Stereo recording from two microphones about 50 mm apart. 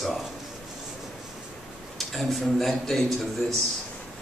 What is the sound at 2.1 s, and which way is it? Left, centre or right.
A man's voice, centre.